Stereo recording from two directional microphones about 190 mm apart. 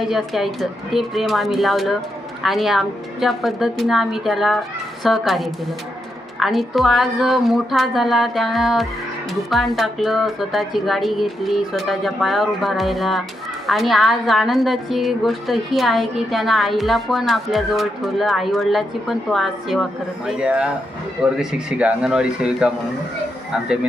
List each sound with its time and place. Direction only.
0.0 s a woman's voice: centre (ahead or behind)